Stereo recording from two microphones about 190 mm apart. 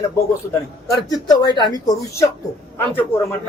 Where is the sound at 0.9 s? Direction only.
20° left (ahead or behind).